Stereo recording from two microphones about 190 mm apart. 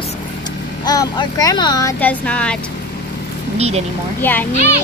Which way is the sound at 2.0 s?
5° left (ahead or behind).